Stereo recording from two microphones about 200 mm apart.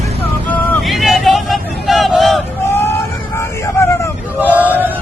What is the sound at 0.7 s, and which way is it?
Hubbub, centre (ahead or behind).